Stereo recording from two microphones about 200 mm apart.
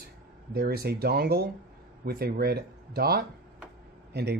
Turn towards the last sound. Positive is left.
turn(degrees=-55)  # may be behind; listen again after turning